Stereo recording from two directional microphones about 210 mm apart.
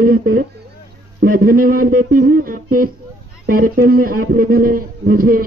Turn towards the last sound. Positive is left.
turn(degrees=-45)  # may be behind; listen again after turning